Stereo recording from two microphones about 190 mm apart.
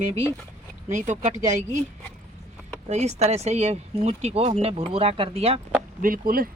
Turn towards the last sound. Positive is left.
turn(degrees=-50)  # may be behind; listen again after turning